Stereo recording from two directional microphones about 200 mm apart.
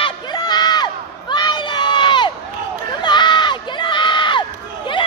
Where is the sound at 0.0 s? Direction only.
20° left (ahead or behind).